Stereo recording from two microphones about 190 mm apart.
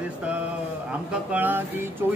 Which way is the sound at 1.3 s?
10° right (ahead or behind).